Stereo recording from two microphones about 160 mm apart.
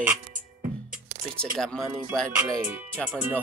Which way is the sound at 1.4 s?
5° left (ahead or behind).